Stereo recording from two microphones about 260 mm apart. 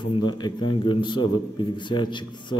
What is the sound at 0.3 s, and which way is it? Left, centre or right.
A man's voice, centre.